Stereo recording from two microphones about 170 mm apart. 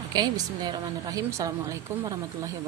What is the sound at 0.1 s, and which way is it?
A woman's voice, 25° right (ahead or behind).